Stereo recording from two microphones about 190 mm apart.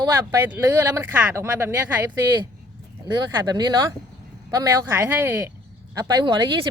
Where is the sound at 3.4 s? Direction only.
20° right (ahead or behind).